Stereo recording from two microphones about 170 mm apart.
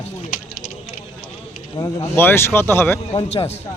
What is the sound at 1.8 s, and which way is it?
Speech, 25° left (ahead or behind).